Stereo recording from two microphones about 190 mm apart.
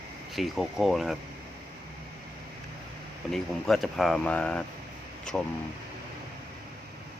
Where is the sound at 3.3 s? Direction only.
Centre (ahead or behind).